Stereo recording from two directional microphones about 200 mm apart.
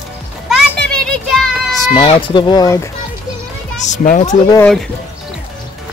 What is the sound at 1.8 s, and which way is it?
Speech, 30° left (ahead or behind).